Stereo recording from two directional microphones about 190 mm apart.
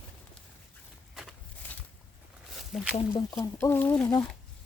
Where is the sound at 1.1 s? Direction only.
Centre (ahead or behind).